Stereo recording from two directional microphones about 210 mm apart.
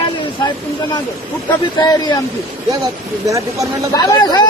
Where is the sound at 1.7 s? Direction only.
20° left (ahead or behind).